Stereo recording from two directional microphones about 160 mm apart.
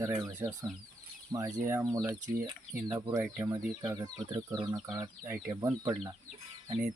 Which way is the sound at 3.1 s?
15° right (ahead or behind).